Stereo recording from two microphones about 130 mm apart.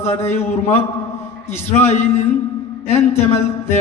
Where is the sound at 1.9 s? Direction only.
55° left (ahead or behind).